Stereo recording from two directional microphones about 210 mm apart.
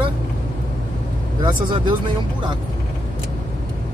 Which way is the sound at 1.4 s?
20° right (ahead or behind).